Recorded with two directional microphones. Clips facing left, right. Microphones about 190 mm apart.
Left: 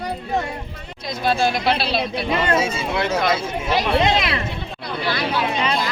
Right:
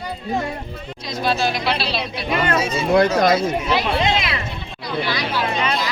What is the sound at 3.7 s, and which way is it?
Speech, 40° left (ahead or behind).